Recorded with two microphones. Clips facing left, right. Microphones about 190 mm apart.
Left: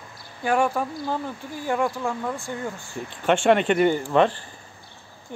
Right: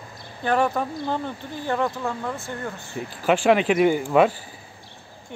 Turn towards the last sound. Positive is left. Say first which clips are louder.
# right 1 dB
turn(degrees=-5)  # may be behind; listen again after turning